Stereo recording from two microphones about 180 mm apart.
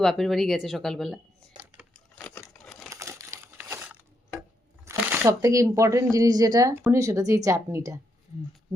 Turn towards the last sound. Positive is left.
turn(degrees=-15)  # may be behind; listen again after turning